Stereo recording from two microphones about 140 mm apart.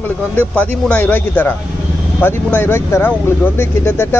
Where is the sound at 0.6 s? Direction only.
10° left (ahead or behind).